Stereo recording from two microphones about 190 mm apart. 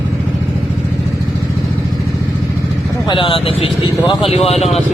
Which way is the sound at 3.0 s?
25° left (ahead or behind).